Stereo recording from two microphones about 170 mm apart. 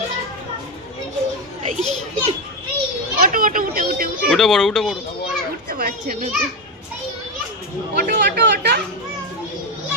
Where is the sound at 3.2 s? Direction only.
55° right (ahead or behind).